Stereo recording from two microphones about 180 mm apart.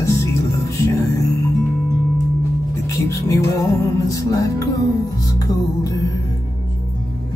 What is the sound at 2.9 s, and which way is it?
Music, 15° left (ahead or behind).